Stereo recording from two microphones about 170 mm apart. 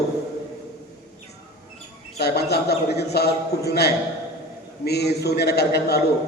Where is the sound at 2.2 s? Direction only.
70° left (ahead or behind).